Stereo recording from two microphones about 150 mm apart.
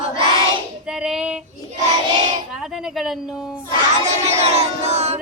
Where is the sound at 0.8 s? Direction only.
5° right (ahead or behind).